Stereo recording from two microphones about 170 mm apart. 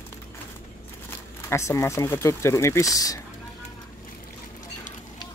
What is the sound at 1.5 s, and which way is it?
Speech, 15° left (ahead or behind).